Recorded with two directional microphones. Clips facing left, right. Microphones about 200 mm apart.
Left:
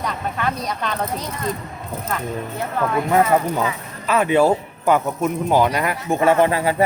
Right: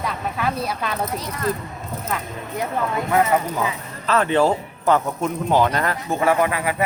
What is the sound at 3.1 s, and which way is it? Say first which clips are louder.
Speech: left 2 dB; 30° left (ahead or behind).